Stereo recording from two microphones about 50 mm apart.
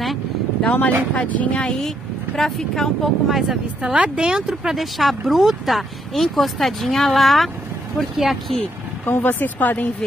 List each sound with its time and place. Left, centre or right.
0.0 s vehicle: centre
0.7 s speech: left
2.3 s speech: centre
3.3 s speech: centre
3.8 s speech: right
4.7 s speech: centre
9.0 s speech: left